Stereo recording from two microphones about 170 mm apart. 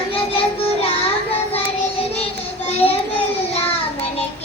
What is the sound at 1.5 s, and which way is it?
Child singing, 35° left (ahead or behind).